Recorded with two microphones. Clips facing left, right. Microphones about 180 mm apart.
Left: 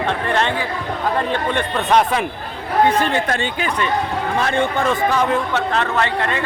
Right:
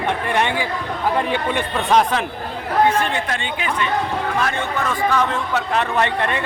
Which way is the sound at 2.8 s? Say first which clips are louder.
Left 2 dB; 35° left (ahead or behind).